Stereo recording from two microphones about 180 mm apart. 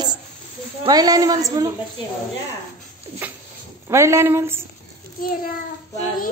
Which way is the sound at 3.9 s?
15° right (ahead or behind).